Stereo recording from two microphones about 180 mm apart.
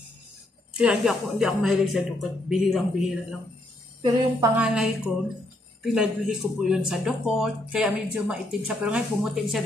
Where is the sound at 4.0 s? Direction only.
20° right (ahead or behind).